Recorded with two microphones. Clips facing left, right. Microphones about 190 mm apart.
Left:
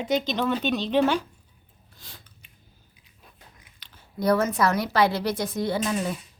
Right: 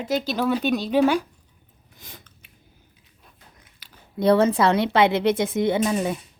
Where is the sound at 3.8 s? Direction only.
10° right (ahead or behind).